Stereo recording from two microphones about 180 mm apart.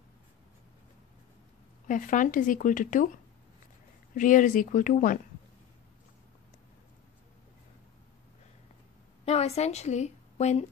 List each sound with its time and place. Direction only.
1.9 s speech: 45° left (ahead or behind)
4.1 s speech: 45° left (ahead or behind)
9.2 s a woman's voice: 35° left (ahead or behind)